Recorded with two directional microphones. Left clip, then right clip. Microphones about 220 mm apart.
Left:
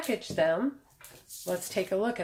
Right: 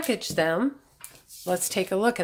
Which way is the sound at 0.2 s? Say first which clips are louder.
Right 2 dB; 40° right (ahead or behind).